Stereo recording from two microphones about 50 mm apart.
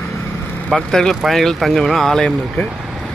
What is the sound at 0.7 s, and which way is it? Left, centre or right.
Speech, centre.